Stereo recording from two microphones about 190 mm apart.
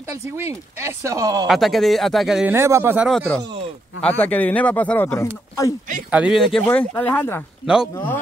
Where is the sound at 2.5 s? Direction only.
15° right (ahead or behind).